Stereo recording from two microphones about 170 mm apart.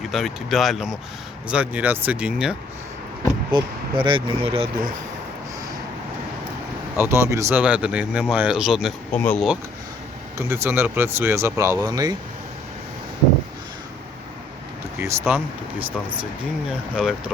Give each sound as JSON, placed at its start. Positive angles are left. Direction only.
{"t": 0.1, "sound": "speech", "side_deg": 0}
{"t": 3.5, "sound": "speech", "side_deg": -30}
{"t": 6.9, "sound": "speech", "side_deg": -15}
{"t": 9.1, "sound": "speech", "side_deg": 10}
{"t": 10.3, "sound": "speech", "side_deg": -15}
{"t": 15.0, "sound": "speech", "side_deg": -15}